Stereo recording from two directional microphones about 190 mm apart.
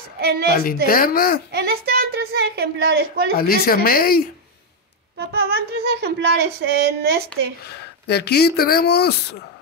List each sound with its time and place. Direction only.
0.2 s speech: 55° right (ahead or behind)
0.8 s speech: 50° left (ahead or behind)
1.5 s speech: 55° right (ahead or behind)
3.3 s speech: 50° left (ahead or behind)
5.1 s speech: 60° right (ahead or behind)
7.6 s speech: 60° left (ahead or behind)